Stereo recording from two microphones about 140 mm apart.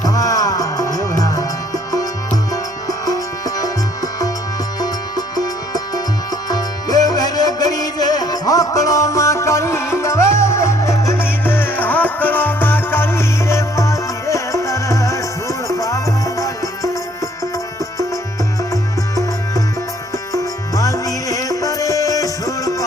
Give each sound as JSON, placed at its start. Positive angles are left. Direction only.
{"t": 0.0, "sound": "music", "side_deg": 25}
{"t": 18.7, "sound": "music", "side_deg": 25}